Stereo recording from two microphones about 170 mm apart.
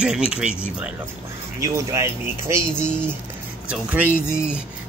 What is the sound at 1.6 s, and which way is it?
Speech, 15° right (ahead or behind).